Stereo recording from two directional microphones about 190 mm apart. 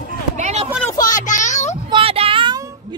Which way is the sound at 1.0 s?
40° left (ahead or behind).